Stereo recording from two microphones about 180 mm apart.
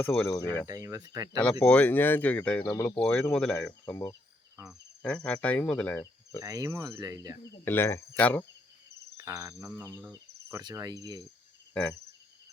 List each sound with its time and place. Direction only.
0.0 s speech: 10° left (ahead or behind)
0.7 s speech: 20° right (ahead or behind)
1.4 s speech: 10° left (ahead or behind)
4.7 s cricket: 5° left (ahead or behind)
6.4 s speech: 20° right (ahead or behind)
7.5 s speech: 10° left (ahead or behind)
9.1 s speech: 20° right (ahead or behind)
10.1 s cricket: 20° right (ahead or behind)
11.7 s cricket: 5° left (ahead or behind)